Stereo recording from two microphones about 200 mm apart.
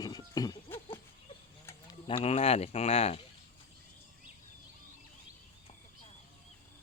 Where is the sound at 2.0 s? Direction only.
30° left (ahead or behind).